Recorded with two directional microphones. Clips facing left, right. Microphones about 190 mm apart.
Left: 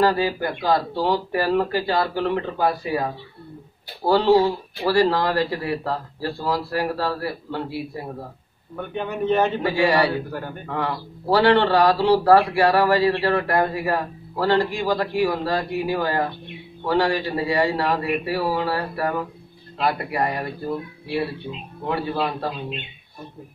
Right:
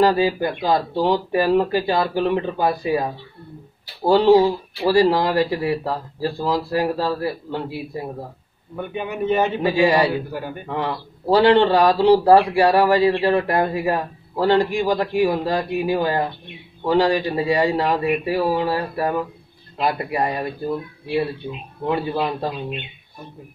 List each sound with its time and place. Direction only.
0.0 s speech: 20° right (ahead or behind)
8.7 s speech: 5° right (ahead or behind)
9.6 s speech: 15° right (ahead or behind)
10.7 s speech: 20° right (ahead or behind)
21.8 s speech: 15° right (ahead or behind)